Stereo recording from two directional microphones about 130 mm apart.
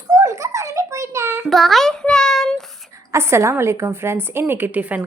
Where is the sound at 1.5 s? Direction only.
Centre (ahead or behind).